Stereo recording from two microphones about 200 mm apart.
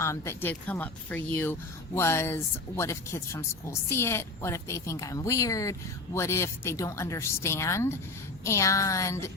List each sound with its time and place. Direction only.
0.0 s speech: 15° left (ahead or behind)